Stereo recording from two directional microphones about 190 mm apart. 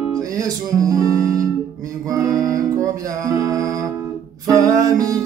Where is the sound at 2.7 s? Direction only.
15° right (ahead or behind).